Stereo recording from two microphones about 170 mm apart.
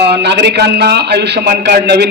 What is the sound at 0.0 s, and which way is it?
A man's voice, 80° right.